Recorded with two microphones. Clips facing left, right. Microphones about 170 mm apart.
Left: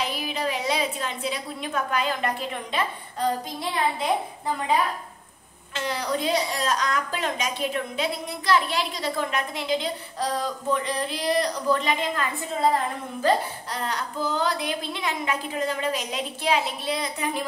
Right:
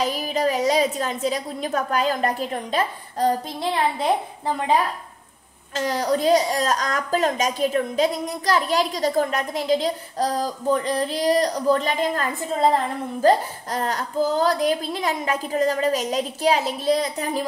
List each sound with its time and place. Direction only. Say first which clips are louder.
0.0 s a woman's voice: right 6 dB; 40° right (ahead or behind)
5.8 s a woman's voice: right 5 dB; 40° right (ahead or behind)